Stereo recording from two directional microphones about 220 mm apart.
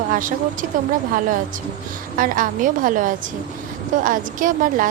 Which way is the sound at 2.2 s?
40° right (ahead or behind).